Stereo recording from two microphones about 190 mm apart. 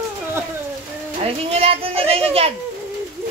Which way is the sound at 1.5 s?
30° right (ahead or behind).